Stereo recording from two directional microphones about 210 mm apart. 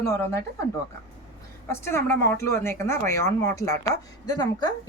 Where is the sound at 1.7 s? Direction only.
10° left (ahead or behind).